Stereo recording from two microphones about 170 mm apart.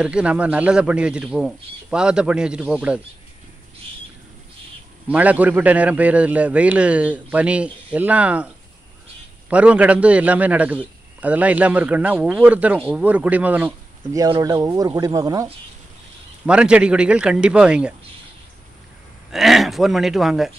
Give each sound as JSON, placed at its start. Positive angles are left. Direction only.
{"t": 0.0, "sound": "speech", "side_deg": -5}
{"t": 5.0, "sound": "a man's voice", "side_deg": -10}
{"t": 9.5, "sound": "a man's voice", "side_deg": -10}
{"t": 14.1, "sound": "speech", "side_deg": -20}
{"t": 16.4, "sound": "speech", "side_deg": -5}
{"t": 19.3, "sound": "speech", "side_deg": 0}